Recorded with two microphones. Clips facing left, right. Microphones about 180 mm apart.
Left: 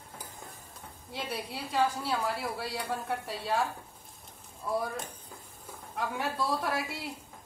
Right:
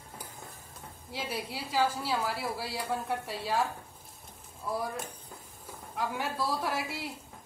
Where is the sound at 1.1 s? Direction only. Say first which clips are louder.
Even; centre (ahead or behind).